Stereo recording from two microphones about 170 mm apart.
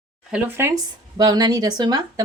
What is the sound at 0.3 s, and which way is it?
Speech, 15° right (ahead or behind).